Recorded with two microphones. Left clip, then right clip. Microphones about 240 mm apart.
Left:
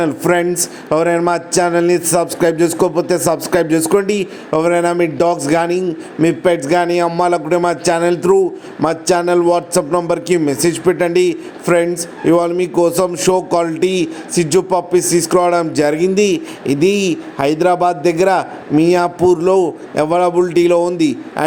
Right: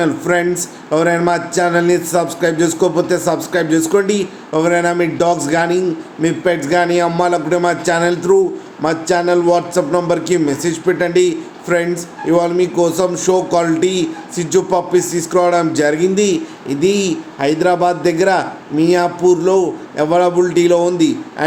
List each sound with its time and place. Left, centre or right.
0.0 s a man's voice: left